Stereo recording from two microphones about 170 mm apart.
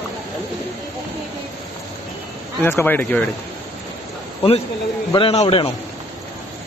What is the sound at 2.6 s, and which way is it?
Speech, 10° left (ahead or behind).